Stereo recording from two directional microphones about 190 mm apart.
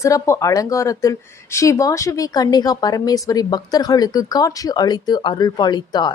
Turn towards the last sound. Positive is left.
turn(degrees=25)  # may be behind; listen again after turning